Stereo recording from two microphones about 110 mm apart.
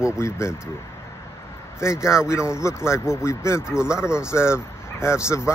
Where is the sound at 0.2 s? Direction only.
25° left (ahead or behind).